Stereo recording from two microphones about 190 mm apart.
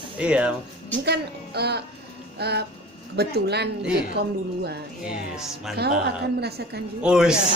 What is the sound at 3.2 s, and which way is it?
Speech, 60° right (ahead or behind).